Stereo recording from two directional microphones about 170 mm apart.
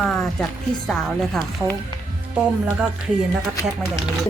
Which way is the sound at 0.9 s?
Centre (ahead or behind).